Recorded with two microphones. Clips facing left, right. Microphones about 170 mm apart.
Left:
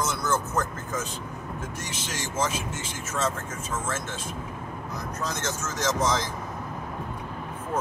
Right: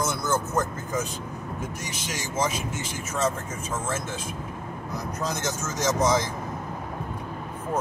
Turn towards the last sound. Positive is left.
turn(degrees=-15)  # may be behind; listen again after turning